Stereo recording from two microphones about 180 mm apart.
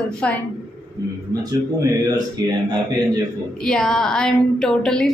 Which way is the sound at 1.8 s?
20° right (ahead or behind).